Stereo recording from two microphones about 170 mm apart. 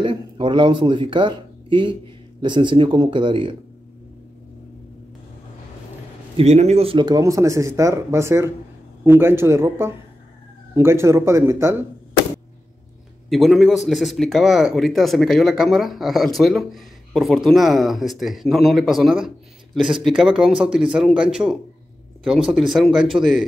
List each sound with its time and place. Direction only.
0.0 s a sound: 30° right (ahead or behind)
2.4 s speech: 25° right (ahead or behind)
6.3 s speech: 40° right (ahead or behind); by 11.7 s 15° right (ahead or behind)
13.3 s speech: centre (ahead or behind)